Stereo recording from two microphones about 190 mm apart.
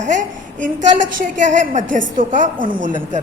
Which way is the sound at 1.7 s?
40° right (ahead or behind).